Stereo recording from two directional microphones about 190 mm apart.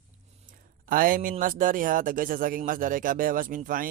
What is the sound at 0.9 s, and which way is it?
A man's voice, 45° right (ahead or behind).